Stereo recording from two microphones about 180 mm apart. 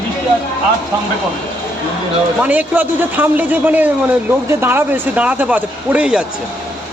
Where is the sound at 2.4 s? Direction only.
10° right (ahead or behind).